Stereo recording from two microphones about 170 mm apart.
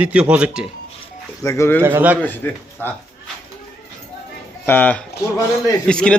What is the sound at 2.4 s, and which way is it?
Speech, 10° left (ahead or behind).